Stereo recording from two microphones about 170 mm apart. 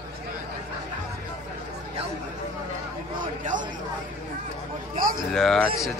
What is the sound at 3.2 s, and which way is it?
Speech, 50° right (ahead or behind).